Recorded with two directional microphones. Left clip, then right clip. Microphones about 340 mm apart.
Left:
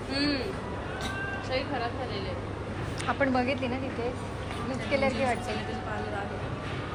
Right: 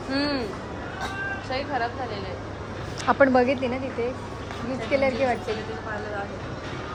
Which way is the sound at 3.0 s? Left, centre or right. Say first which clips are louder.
Right 9 dB; centre.